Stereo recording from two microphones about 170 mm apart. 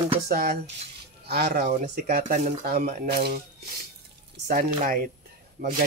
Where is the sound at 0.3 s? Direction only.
70° right (ahead or behind).